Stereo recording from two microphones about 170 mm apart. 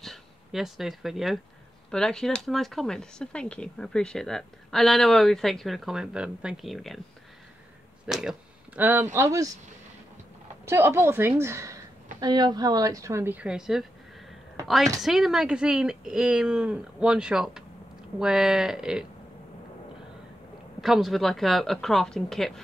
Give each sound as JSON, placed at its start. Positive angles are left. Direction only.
{"t": 0.0, "sound": "speech", "side_deg": 0}
{"t": 8.1, "sound": "a woman's voice", "side_deg": -5}
{"t": 10.6, "sound": "a woman's voice", "side_deg": -15}
{"t": 15.0, "sound": "speech", "side_deg": 0}
{"t": 20.8, "sound": "speech", "side_deg": 0}